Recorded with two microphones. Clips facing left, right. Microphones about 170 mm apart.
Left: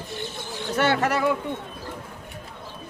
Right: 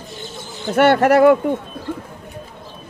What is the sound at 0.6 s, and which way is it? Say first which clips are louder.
Speech: right 9 dB; 60° right (ahead or behind).